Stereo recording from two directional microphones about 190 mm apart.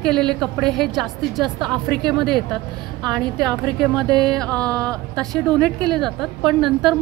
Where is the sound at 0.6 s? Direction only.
Centre (ahead or behind).